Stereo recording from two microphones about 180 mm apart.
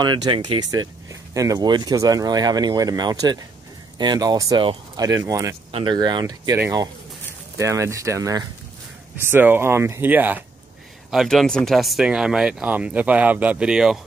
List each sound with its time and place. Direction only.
0.0 s speech: 25° right (ahead or behind)
5.7 s speech: 30° right (ahead or behind); by 13.9 s 5° right (ahead or behind)